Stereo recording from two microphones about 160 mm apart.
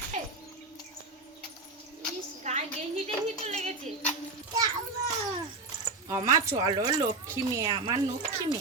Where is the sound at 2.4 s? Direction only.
45° right (ahead or behind).